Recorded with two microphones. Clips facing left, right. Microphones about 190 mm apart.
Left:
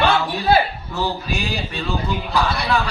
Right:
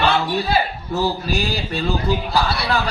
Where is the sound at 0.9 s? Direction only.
35° right (ahead or behind).